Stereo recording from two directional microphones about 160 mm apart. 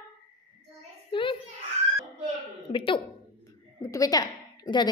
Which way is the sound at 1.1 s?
30° left (ahead or behind).